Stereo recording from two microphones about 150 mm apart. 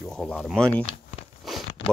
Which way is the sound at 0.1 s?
5° left (ahead or behind).